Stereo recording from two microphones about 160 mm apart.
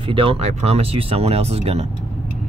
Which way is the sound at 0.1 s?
35° right (ahead or behind).